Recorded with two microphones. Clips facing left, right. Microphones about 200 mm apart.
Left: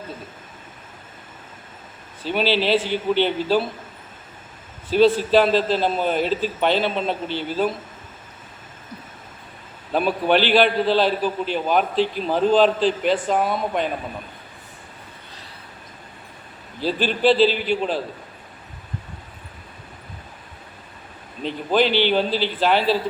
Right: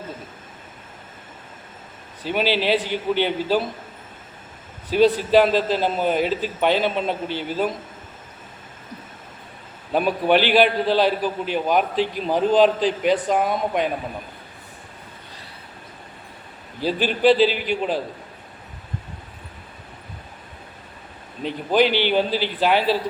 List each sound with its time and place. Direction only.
2.2 s a man's voice: 15° right (ahead or behind)
4.9 s a man's voice: 15° right (ahead or behind)
9.9 s a man's voice: 10° right (ahead or behind)
16.8 s a man's voice: 10° right (ahead or behind)
21.4 s a man's voice: 10° right (ahead or behind)